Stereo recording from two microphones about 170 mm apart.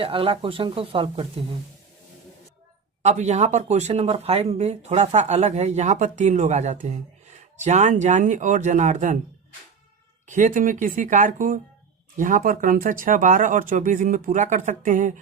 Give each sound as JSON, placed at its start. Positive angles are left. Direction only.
{"t": 0.0, "sound": "speech", "side_deg": -30}
{"t": 3.0, "sound": "speech", "side_deg": -40}
{"t": 10.2, "sound": "speech", "side_deg": -45}